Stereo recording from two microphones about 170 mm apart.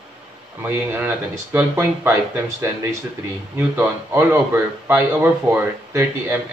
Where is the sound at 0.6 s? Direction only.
10° right (ahead or behind).